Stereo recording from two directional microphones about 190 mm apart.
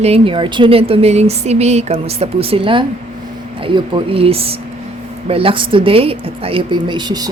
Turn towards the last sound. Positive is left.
turn(degrees=-20)  # may be behind; listen again after turning